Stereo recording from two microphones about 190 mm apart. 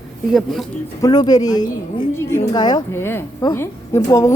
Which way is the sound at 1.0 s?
20° left (ahead or behind).